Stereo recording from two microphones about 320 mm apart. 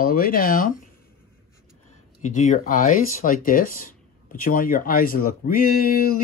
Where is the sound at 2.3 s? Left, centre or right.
Left.